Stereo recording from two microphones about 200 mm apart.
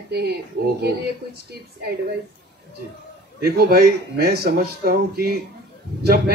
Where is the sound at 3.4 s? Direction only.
50° right (ahead or behind).